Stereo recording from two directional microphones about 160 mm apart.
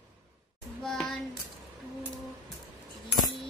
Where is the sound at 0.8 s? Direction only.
5° left (ahead or behind).